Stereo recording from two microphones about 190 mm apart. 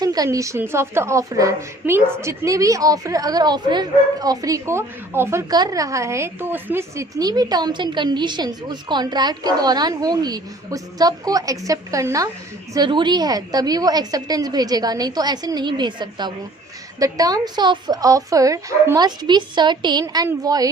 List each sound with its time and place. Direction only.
0.0 s a woman's voice: 20° right (ahead or behind)